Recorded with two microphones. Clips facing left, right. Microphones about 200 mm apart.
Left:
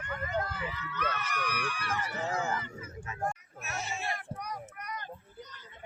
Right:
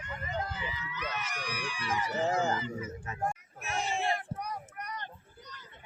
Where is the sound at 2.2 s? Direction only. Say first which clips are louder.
Right 5 dB; 35° right (ahead or behind).